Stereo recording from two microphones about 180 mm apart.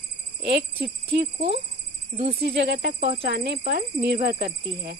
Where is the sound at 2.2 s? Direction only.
35° right (ahead or behind).